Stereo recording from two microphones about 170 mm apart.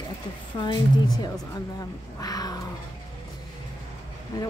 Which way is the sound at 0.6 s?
30° left (ahead or behind).